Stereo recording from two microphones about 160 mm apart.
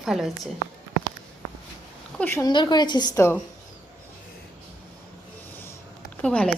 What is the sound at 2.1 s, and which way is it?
Speech, 15° left (ahead or behind).